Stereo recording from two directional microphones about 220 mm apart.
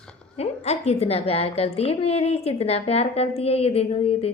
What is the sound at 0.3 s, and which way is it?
A woman's voice, 30° left (ahead or behind).